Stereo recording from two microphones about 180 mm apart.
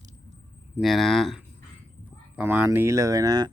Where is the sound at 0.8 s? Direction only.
Centre (ahead or behind).